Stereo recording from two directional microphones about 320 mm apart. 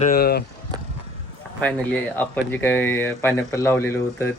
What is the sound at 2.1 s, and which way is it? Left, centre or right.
Speech, centre.